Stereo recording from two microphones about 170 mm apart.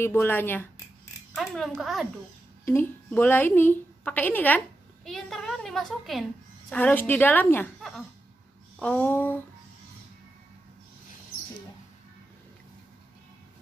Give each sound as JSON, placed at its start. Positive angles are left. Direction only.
{"t": 0.0, "sound": "speech", "side_deg": 15}
{"t": 1.3, "sound": "speech", "side_deg": 0}
{"t": 2.6, "sound": "a woman's voice", "side_deg": 15}
{"t": 8.7, "sound": "speech", "side_deg": 5}